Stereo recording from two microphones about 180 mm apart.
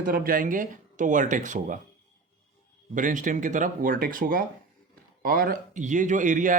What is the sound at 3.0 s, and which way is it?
Speech, 45° right (ahead or behind).